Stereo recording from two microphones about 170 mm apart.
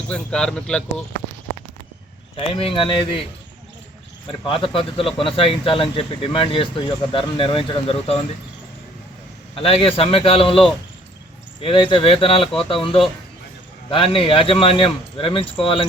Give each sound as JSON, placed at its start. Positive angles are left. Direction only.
{"t": 0.1, "sound": "speech", "side_deg": 5}
{"t": 2.3, "sound": "speech", "side_deg": 30}
{"t": 4.3, "sound": "speech", "side_deg": 30}
{"t": 9.6, "sound": "speech", "side_deg": 35}
{"t": 13.9, "sound": "speech", "side_deg": 30}